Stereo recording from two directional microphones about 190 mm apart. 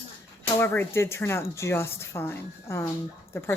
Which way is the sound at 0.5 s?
10° left (ahead or behind).